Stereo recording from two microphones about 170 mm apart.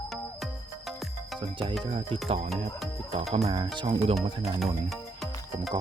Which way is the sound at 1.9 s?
40° right (ahead or behind).